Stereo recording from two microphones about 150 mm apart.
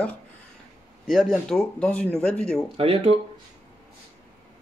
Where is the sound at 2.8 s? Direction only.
40° right (ahead or behind).